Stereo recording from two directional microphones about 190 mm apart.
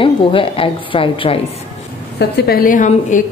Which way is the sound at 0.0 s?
30° left (ahead or behind).